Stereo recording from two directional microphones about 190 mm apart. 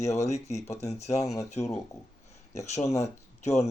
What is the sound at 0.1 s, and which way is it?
Speech, 35° left (ahead or behind).